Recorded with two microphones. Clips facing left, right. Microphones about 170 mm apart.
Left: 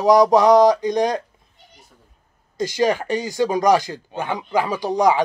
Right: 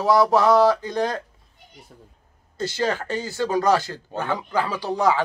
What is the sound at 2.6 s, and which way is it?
A man's voice, 15° left (ahead or behind).